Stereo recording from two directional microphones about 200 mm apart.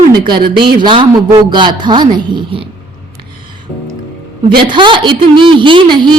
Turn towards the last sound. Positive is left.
turn(degrees=-25)  # may be behind; listen again after turning